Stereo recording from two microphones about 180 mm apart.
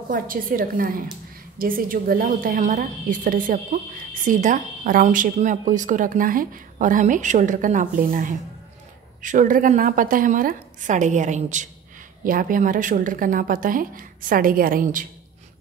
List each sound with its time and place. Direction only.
0.1 s a woman's voice: 50° right (ahead or behind)